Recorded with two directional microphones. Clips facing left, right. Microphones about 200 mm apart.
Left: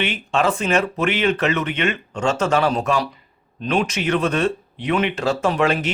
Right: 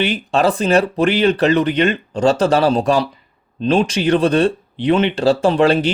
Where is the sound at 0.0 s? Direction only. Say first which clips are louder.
Right 4 dB; 35° right (ahead or behind).